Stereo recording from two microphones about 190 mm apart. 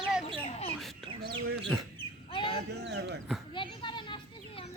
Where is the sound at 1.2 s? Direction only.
60° right (ahead or behind).